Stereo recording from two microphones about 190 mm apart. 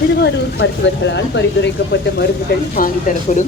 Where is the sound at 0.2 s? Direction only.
65° left (ahead or behind).